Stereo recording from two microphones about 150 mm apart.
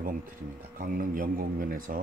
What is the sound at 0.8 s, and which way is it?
Speech, 65° right (ahead or behind).